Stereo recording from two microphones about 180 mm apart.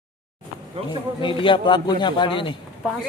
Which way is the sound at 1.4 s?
25° left (ahead or behind).